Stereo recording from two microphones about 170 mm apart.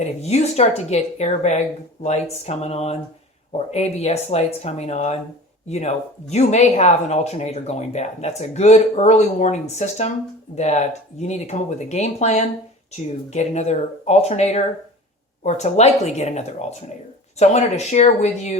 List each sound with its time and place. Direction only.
0.0 s speech: 40° left (ahead or behind)